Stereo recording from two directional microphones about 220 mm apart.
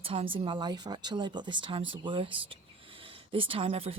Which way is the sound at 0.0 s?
25° right (ahead or behind).